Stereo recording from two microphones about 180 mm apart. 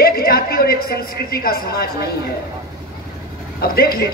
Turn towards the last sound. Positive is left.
turn(degrees=55)  # may be behind; listen again after turning